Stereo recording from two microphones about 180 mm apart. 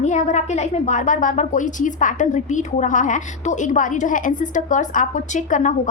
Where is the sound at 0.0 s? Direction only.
40° left (ahead or behind).